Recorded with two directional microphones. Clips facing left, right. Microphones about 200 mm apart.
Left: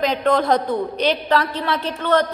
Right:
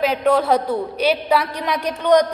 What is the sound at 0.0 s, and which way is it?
A woman's voice, 10° right (ahead or behind).